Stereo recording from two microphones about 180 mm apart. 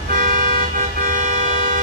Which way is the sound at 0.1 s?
45° right (ahead or behind).